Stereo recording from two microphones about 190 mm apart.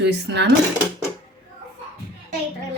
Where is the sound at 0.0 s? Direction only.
65° right (ahead or behind).